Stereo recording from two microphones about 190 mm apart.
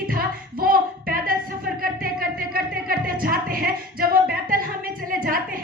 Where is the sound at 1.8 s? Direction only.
50° right (ahead or behind).